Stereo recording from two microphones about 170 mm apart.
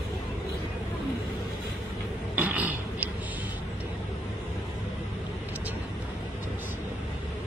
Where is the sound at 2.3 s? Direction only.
10° right (ahead or behind).